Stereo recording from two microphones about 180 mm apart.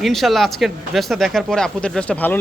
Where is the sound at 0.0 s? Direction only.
Centre (ahead or behind).